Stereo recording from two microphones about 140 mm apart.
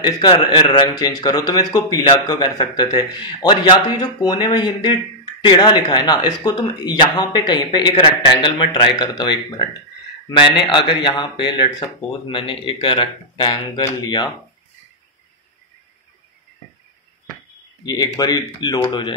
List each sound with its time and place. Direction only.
0.0 s a man's voice: 30° left (ahead or behind)
17.8 s speech: 30° left (ahead or behind)